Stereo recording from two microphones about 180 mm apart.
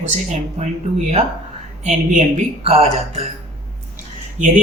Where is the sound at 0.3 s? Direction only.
40° right (ahead or behind).